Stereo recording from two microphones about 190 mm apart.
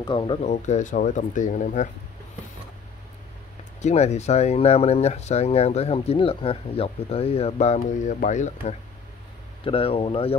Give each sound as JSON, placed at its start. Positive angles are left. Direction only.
{"t": 0.0, "sound": "speech", "side_deg": 25}
{"t": 0.5, "sound": "speech", "side_deg": 40}
{"t": 3.8, "sound": "speech", "side_deg": 35}
{"t": 9.7, "sound": "speech", "side_deg": 30}